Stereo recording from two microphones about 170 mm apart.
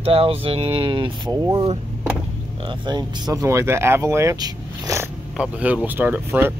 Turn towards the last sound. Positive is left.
turn(degrees=-15)  # may be behind; listen again after turning